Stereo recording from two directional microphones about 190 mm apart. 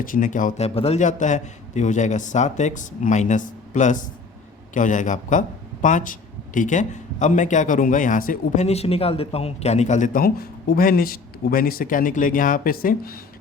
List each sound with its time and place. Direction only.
0.0 s a man's voice: 45° left (ahead or behind)